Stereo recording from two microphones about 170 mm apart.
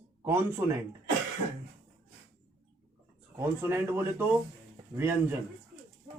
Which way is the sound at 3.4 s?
15° right (ahead or behind).